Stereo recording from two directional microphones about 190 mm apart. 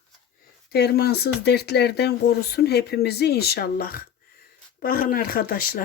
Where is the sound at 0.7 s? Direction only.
55° left (ahead or behind).